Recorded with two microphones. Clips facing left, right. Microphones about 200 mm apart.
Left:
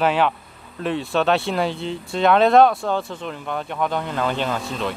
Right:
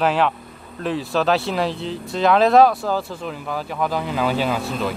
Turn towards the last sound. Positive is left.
turn(degrees=-5)  # may be behind; listen again after turning